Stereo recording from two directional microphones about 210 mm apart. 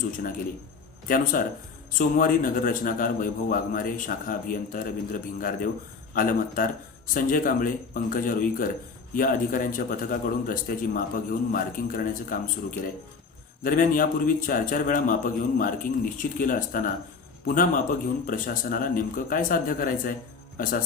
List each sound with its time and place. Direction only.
0.2 s speech: 40° left (ahead or behind)
6.1 s speech: 40° left (ahead or behind)
13.6 s speech: 40° left (ahead or behind)